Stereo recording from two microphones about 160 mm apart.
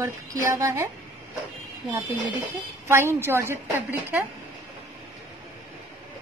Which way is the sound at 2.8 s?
15° right (ahead or behind).